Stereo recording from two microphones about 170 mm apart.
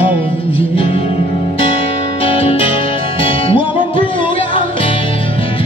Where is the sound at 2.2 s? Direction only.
35° left (ahead or behind).